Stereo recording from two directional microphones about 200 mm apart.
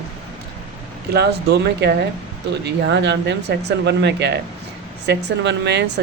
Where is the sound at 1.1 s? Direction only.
55° right (ahead or behind).